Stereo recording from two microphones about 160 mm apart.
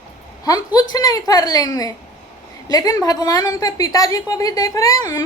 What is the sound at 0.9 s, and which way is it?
A woman's voice, 25° left (ahead or behind).